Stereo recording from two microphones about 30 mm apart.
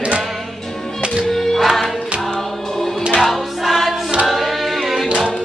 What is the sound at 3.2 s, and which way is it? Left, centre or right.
Choir, centre.